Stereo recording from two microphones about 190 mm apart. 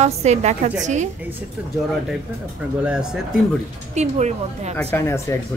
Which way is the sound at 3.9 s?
35° right (ahead or behind).